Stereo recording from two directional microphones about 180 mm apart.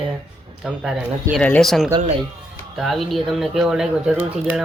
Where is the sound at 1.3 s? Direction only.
5° left (ahead or behind).